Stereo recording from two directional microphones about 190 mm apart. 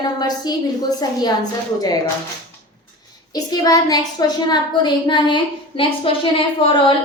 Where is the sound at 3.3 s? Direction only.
20° left (ahead or behind).